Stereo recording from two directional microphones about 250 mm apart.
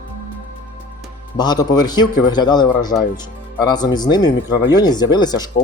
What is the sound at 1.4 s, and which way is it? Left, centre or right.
Speech, centre.